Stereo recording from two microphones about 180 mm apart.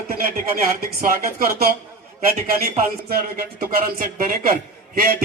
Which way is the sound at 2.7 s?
55° right (ahead or behind).